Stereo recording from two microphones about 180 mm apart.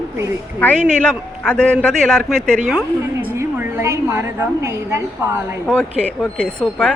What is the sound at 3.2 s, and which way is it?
A woman's voice, 15° right (ahead or behind).